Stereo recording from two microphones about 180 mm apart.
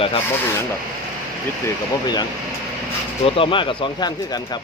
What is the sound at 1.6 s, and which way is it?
Speech, 25° left (ahead or behind).